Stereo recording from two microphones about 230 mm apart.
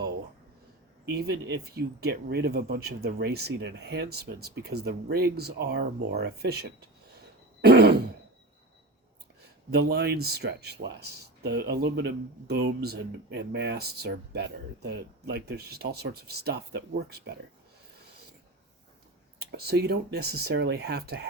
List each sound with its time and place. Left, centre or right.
1.1 s speech: right
7.6 s throat clearing: right
9.7 s speech: right
19.4 s speech: right